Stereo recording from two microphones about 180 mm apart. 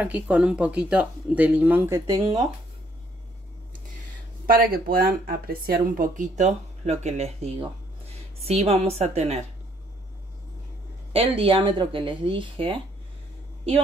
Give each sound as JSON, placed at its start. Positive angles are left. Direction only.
{"t": 0.0, "sound": "speech", "side_deg": -5}
{"t": 4.5, "sound": "speech", "side_deg": -55}
{"t": 11.1, "sound": "speech", "side_deg": -30}